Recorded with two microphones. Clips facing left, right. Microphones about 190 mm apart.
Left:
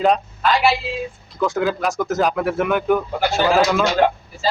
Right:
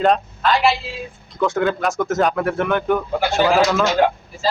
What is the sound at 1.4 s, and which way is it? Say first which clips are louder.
Speech: right 1 dB; centre (ahead or behind).